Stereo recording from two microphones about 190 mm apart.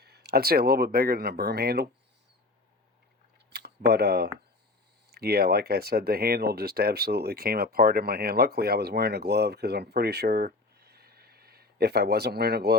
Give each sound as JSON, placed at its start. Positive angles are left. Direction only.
{"t": 0.0, "sound": "speech", "side_deg": -60}
{"t": 3.3, "sound": "a sound", "side_deg": -60}
{"t": 5.1, "sound": "speech", "side_deg": -55}